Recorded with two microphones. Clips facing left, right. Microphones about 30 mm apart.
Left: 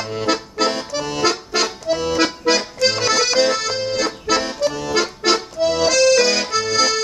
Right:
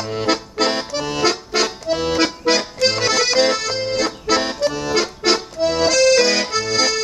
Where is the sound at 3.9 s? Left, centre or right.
Centre.